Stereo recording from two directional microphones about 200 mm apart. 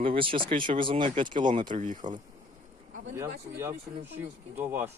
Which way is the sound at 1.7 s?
40° right (ahead or behind).